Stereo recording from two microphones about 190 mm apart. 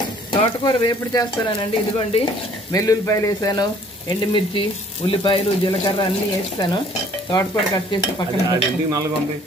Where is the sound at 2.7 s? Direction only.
20° left (ahead or behind).